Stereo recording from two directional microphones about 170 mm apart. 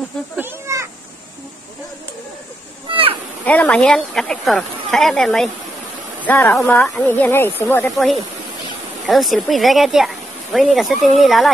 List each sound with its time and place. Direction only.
0.4 s cat: 15° right (ahead or behind)
2.9 s a sound: 30° right (ahead or behind)
3.4 s speech: 10° left (ahead or behind)
9.0 s speech: centre (ahead or behind)